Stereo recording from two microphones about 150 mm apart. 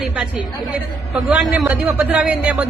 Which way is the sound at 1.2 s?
5° right (ahead or behind).